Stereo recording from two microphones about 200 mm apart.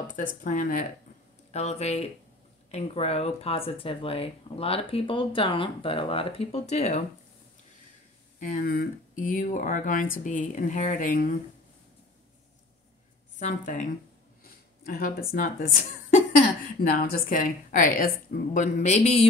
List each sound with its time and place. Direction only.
0.0 s speech: 40° left (ahead or behind)
8.4 s a woman's voice: 45° left (ahead or behind)
13.4 s speech: 35° left (ahead or behind)
14.4 s a sound: 45° left (ahead or behind)
15.3 s a woman's voice: 45° left (ahead or behind)
16.9 s a woman's voice: 45° left (ahead or behind)